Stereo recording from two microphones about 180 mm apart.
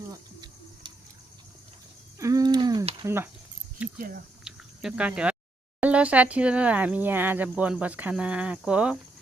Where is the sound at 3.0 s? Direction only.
15° right (ahead or behind).